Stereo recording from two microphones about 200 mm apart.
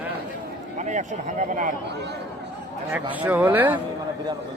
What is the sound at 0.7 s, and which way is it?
Speech, 35° right (ahead or behind).